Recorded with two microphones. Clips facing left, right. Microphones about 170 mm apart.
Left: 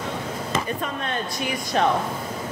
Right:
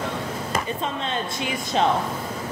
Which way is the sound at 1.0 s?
25° right (ahead or behind).